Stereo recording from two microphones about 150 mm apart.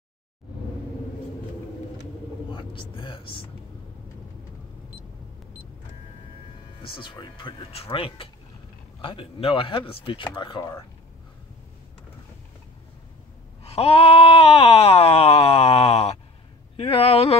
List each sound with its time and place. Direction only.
2.5 s speech: 35° left (ahead or behind)
6.9 s speech: 35° left (ahead or behind)
13.7 s a sound: 40° left (ahead or behind)